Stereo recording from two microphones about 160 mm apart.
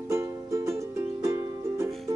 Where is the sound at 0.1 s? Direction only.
20° right (ahead or behind).